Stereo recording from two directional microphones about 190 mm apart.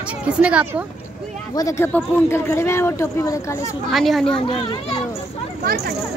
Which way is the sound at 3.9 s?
Centre (ahead or behind).